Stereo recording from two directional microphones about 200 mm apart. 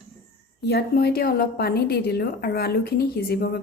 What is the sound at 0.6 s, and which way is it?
A woman's voice, 55° left (ahead or behind).